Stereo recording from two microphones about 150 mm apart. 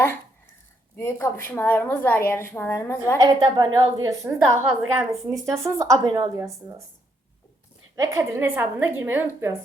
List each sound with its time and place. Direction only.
0.9 s a woman's voice: 15° left (ahead or behind)
3.2 s a woman's voice: 25° right (ahead or behind)
7.9 s a woman's voice: 20° right (ahead or behind)